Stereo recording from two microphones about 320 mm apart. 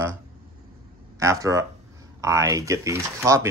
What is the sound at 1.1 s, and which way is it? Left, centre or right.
Speech, centre.